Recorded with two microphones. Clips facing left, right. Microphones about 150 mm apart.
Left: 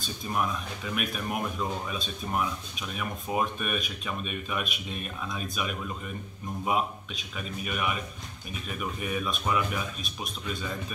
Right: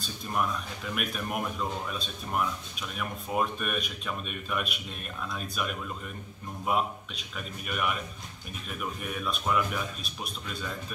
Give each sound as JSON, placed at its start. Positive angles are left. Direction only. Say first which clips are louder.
{"t": 0.3, "sound": "speech", "louder": "even", "side_deg": 5}
{"t": 7.3, "sound": "speech", "louder": "left 1 dB", "side_deg": 0}